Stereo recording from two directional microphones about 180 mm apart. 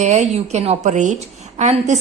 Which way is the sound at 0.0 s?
40° right (ahead or behind).